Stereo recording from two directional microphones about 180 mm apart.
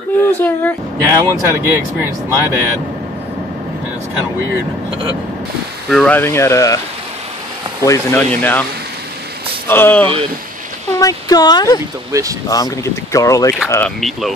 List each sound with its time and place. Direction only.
0.3 s speech: 10° left (ahead or behind)
0.9 s speech: 15° right (ahead or behind)
5.9 s speech: 5° left (ahead or behind)
7.8 s speech: 15° left (ahead or behind)
9.7 s speech: 10° left (ahead or behind)
11.0 s speech: 20° left (ahead or behind)
12.1 s speech: 20° right (ahead or behind)
12.4 s speech: 20° left (ahead or behind)